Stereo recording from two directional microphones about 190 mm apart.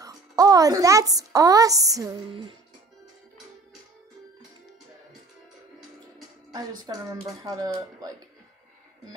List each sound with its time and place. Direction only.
0.0 s a woman's voice: 20° right (ahead or behind)
6.9 s speech: 20° right (ahead or behind)